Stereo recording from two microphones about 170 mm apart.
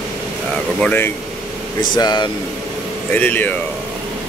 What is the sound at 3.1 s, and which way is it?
Speech, 10° left (ahead or behind).